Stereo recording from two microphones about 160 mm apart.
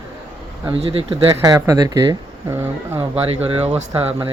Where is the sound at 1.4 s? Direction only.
20° right (ahead or behind).